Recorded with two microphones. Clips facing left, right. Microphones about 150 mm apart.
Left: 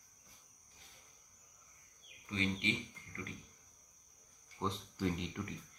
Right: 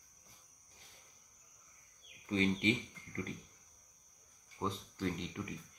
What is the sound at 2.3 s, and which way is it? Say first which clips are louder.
Speech: right 5 dB; 35° right (ahead or behind).